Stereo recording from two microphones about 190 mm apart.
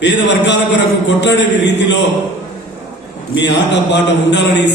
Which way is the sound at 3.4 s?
65° left (ahead or behind).